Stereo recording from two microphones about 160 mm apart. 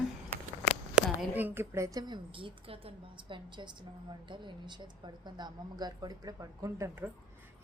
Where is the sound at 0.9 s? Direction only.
10° right (ahead or behind).